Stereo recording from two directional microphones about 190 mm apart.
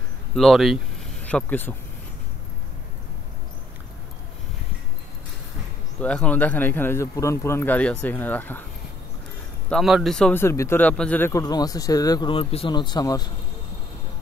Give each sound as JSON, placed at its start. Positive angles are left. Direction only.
{"t": 0.4, "sound": "speech", "side_deg": 0}
{"t": 5.9, "sound": "a man's voice", "side_deg": 5}
{"t": 9.7, "sound": "a man's voice", "side_deg": 0}